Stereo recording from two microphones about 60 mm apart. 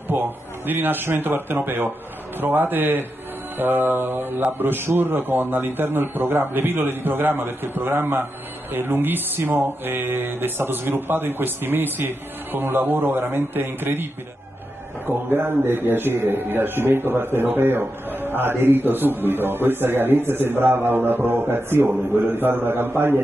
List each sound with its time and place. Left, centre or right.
0.1 s a man's voice: right
15.0 s a man's voice: right